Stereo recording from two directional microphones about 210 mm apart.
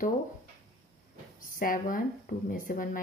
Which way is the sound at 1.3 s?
40° left (ahead or behind).